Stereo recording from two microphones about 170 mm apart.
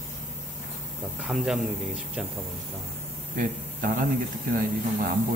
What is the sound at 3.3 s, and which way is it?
Speech, 55° right (ahead or behind).